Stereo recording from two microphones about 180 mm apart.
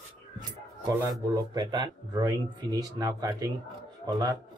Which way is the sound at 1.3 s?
20° right (ahead or behind).